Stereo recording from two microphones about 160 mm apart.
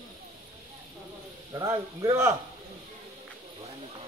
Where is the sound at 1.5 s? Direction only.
20° right (ahead or behind).